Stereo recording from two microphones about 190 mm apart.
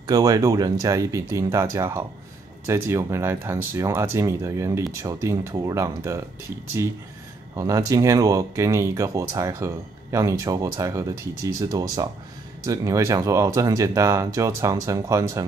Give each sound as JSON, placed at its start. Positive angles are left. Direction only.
{"t": 0.0, "sound": "speech", "side_deg": -20}
{"t": 7.5, "sound": "speech", "side_deg": -15}